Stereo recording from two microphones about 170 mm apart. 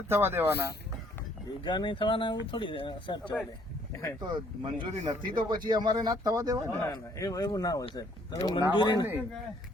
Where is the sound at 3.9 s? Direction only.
15° left (ahead or behind).